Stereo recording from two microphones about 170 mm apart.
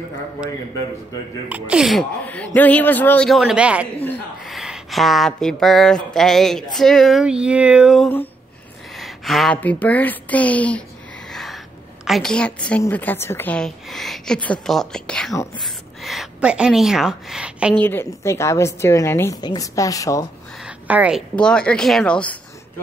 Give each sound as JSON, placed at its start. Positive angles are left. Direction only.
{"t": 1.5, "sound": "speech", "side_deg": -5}
{"t": 2.2, "sound": "a woman's voice", "side_deg": 10}
{"t": 12.0, "sound": "a woman's voice", "side_deg": 0}
{"t": 17.7, "sound": "a woman's voice", "side_deg": 15}
{"t": 20.8, "sound": "a woman's voice", "side_deg": -10}
{"t": 21.4, "sound": "speech", "side_deg": 5}